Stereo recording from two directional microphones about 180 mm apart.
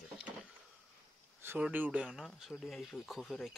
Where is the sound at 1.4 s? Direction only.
10° right (ahead or behind).